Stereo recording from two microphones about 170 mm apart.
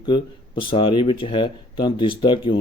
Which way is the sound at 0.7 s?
30° left (ahead or behind).